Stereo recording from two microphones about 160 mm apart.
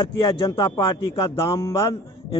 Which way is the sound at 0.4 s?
30° left (ahead or behind).